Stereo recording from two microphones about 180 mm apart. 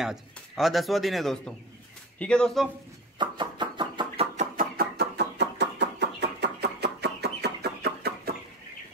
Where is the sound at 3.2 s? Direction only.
25° right (ahead or behind).